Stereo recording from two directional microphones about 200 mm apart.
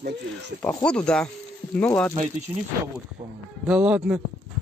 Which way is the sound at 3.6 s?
5° right (ahead or behind).